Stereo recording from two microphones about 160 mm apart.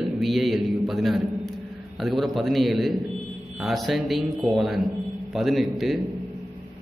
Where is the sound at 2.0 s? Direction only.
Centre (ahead or behind).